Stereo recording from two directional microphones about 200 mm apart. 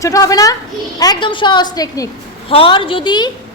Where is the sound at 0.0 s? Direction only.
15° left (ahead or behind).